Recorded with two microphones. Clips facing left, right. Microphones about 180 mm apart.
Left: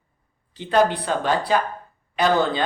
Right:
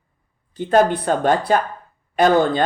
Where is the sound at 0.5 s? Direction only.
45° right (ahead or behind).